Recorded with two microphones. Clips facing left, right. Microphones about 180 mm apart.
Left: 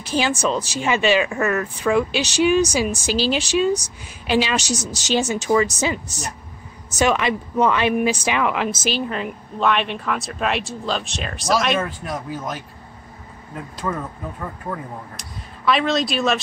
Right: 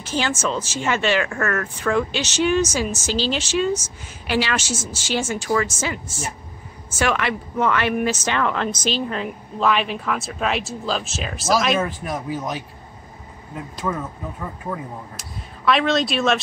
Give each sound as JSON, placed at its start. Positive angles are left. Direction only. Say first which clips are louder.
{"t": 0.0, "sound": "speech", "louder": "left 3 dB", "side_deg": 15}
{"t": 6.0, "sound": "a woman's voice", "louder": "right 1 dB", "side_deg": 40}
{"t": 7.0, "sound": "speech", "louder": "left 3 dB", "side_deg": 20}